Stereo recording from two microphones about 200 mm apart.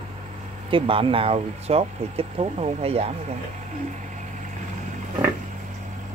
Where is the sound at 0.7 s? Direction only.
25° right (ahead or behind).